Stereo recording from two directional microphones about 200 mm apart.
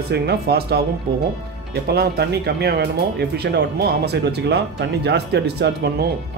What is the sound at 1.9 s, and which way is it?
Speech, 55° right (ahead or behind).